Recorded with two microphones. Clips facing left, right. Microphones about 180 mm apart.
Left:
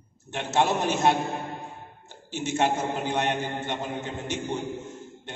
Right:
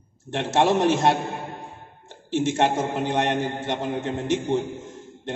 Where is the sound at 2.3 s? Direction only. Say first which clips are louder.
Right 4 dB; 90° right.